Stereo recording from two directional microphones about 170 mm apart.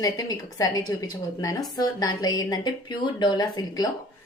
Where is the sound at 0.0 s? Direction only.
20° left (ahead or behind).